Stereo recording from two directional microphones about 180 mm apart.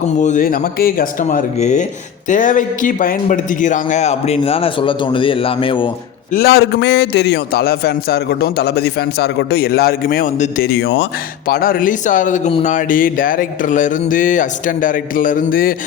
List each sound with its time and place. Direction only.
0.2 s a man's voice: 45° left (ahead or behind); by 5.9 s 30° left (ahead or behind)
6.3 s a man's voice: 60° left (ahead or behind)
10.6 s a man's voice: 65° left (ahead or behind)
11.4 s speech: 55° left (ahead or behind); by 12.7 s 35° left (ahead or behind)
12.7 s speech: 50° left (ahead or behind)